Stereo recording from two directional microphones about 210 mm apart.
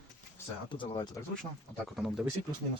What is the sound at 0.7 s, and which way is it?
Speech, 25° left (ahead or behind).